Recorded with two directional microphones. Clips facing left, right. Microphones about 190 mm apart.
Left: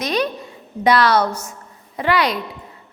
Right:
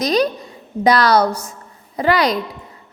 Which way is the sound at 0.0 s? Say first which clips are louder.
Right 4 dB; 35° right (ahead or behind).